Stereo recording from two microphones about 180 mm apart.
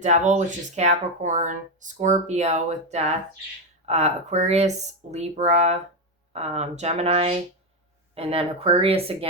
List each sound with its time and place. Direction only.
0.0 s speech: 40° right (ahead or behind)